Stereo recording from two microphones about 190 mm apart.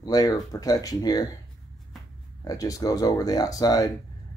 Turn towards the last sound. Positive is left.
turn(degrees=20)  # may be behind; listen again after turning